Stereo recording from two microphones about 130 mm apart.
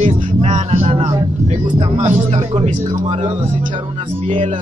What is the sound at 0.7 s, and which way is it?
Speech, 50° right (ahead or behind).